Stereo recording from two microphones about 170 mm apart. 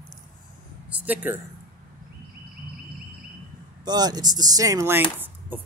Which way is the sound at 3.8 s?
25° right (ahead or behind).